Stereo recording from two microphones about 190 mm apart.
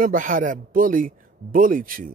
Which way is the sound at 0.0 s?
45° right (ahead or behind).